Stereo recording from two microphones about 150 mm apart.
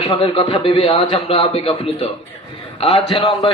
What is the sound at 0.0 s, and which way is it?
A man's voice, 35° left (ahead or behind).